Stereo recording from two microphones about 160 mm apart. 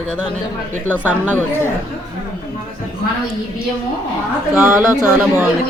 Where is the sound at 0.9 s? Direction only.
10° right (ahead or behind).